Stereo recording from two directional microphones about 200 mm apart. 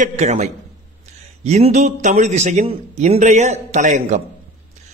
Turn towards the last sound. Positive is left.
turn(degrees=-35)  # may be behind; listen again after turning